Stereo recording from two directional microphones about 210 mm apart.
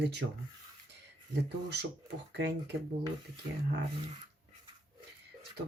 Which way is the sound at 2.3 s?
55° right (ahead or behind).